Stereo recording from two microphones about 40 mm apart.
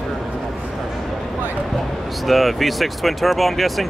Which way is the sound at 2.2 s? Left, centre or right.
Centre.